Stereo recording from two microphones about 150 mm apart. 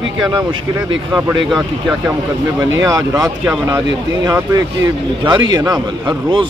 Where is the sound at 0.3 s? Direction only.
25° right (ahead or behind).